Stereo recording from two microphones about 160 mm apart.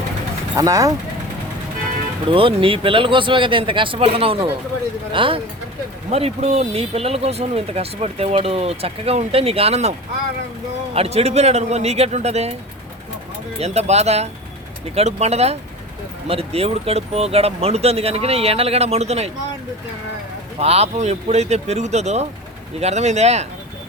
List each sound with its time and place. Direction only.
0.5 s speech: 20° right (ahead or behind)
2.3 s speech: 35° right (ahead or behind)
10.9 s speech: 40° right (ahead or behind)
13.6 s speech: 45° right (ahead or behind)
20.6 s speech: 40° right (ahead or behind)